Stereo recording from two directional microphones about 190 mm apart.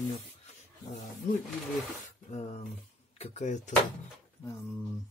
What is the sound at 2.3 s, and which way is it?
Speech, 35° left (ahead or behind).